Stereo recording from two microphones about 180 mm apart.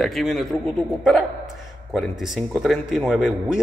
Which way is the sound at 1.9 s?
Centre (ahead or behind).